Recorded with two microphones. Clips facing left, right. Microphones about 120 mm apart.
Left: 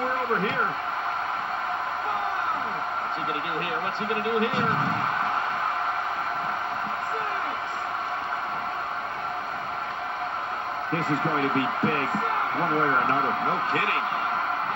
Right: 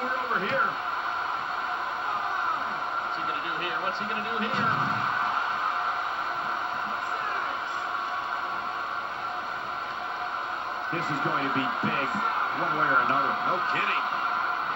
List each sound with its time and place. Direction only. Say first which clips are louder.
4.1 s speech: left 5 dB; 60° left (ahead or behind)
10.9 s speech: left 4 dB; 50° left (ahead or behind)